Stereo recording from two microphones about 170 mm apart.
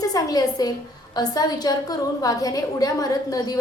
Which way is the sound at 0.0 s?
20° left (ahead or behind).